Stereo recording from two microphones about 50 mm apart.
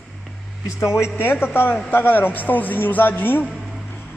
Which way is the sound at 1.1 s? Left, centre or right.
Left.